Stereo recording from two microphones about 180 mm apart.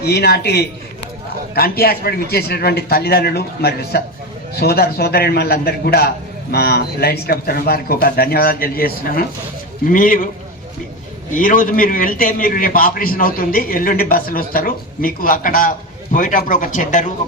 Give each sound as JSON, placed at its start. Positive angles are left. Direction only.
{"t": 0.0, "sound": "a man's voice", "side_deg": 65}
{"t": 11.3, "sound": "a man's voice", "side_deg": 50}